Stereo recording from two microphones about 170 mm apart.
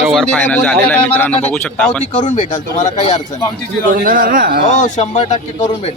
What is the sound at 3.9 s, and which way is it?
Speech, 55° right (ahead or behind).